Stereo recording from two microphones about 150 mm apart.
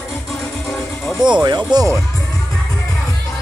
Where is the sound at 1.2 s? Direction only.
5° right (ahead or behind).